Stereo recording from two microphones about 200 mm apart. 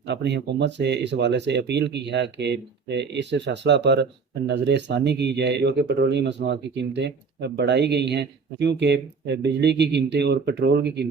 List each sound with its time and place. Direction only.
0.1 s speech: 55° right (ahead or behind)